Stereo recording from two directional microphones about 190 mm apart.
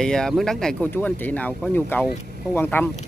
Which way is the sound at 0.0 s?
5° left (ahead or behind).